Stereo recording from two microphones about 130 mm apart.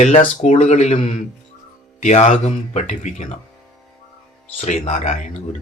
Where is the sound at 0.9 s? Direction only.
50° left (ahead or behind).